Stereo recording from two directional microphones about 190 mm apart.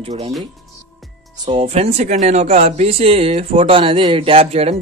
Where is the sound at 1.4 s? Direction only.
30° right (ahead or behind).